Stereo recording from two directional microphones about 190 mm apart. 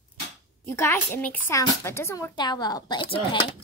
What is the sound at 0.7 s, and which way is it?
A woman's voice, 15° left (ahead or behind).